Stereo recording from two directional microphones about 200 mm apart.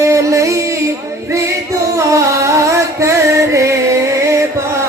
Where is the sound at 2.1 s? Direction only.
15° right (ahead or behind).